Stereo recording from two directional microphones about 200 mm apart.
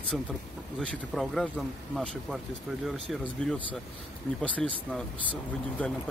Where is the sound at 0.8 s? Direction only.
5° left (ahead or behind).